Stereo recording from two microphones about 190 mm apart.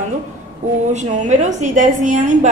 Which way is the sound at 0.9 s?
40° right (ahead or behind).